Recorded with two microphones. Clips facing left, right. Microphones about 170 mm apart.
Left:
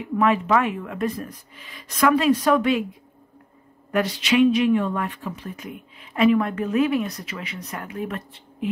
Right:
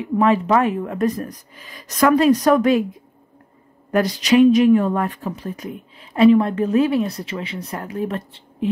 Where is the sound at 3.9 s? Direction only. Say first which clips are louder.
Right 5 dB; 40° right (ahead or behind).